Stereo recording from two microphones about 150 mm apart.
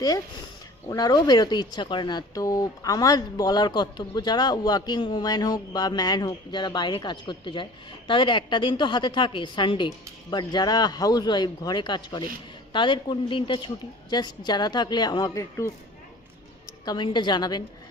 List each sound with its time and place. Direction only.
0.9 s a woman's voice: 25° left (ahead or behind)
16.8 s speech: 30° left (ahead or behind)